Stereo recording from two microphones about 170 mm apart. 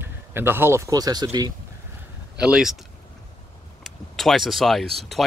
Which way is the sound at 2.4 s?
5° right (ahead or behind).